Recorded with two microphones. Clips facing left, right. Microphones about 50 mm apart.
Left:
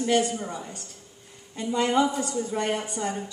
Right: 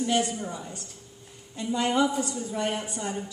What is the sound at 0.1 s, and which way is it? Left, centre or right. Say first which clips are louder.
Speech: left 4 dB; centre.